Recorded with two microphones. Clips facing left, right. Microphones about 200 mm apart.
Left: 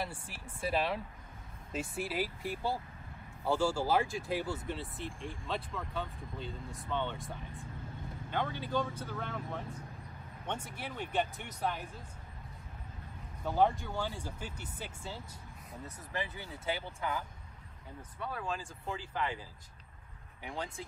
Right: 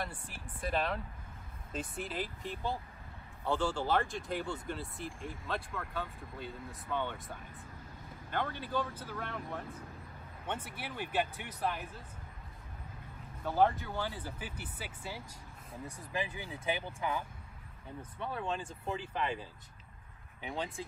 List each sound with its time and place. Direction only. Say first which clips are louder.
0.3 s speech: left 2 dB; 5° left (ahead or behind)
10.5 s speech: even; 5° right (ahead or behind)
13.5 s speech: even; 5° right (ahead or behind); by 17.2 s 20° right (ahead or behind)
18.2 s speech: right 1 dB; 25° right (ahead or behind)